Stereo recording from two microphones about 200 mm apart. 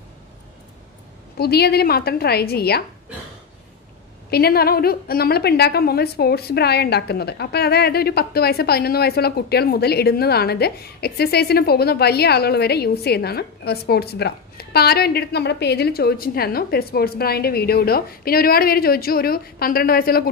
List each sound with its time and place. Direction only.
1.4 s a woman's voice: 50° left (ahead or behind)
4.3 s a woman's voice: 50° left (ahead or behind)